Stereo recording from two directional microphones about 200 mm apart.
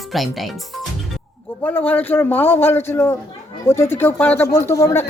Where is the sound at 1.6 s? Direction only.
10° left (ahead or behind).